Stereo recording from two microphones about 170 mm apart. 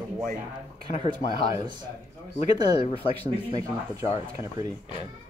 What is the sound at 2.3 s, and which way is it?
Speech, 40° left (ahead or behind).